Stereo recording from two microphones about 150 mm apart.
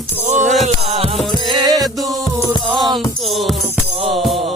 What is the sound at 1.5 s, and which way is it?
Music, 30° right (ahead or behind).